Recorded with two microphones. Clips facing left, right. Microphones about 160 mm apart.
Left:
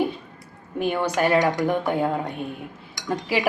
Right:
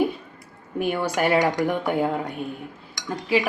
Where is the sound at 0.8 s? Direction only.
10° right (ahead or behind).